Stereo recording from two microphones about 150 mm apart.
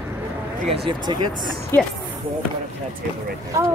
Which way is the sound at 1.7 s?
15° left (ahead or behind).